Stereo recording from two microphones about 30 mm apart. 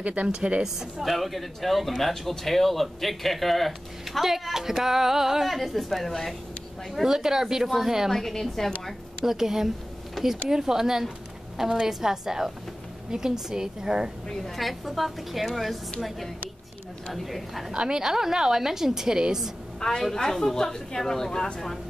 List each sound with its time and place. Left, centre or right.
0.0 s a woman's voice: right
0.6 s speech: centre
1.0 s speech: centre
4.2 s speech: centre
5.4 s speech: centre
7.1 s speech: centre
7.6 s speech: centre
9.2 s speech: centre
10.2 s speech: centre
10.5 s a woman's voice: centre
14.6 s speech: centre
17.1 s speech: centre
17.7 s a woman's voice: right
19.8 s a woman's voice: left